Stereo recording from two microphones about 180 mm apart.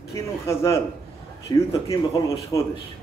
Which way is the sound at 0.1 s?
15° left (ahead or behind).